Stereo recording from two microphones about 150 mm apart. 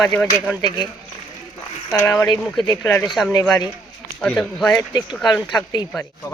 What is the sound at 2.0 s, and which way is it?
Speech, 20° left (ahead or behind).